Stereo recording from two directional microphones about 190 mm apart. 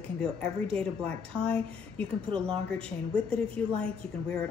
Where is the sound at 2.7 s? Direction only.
5° left (ahead or behind).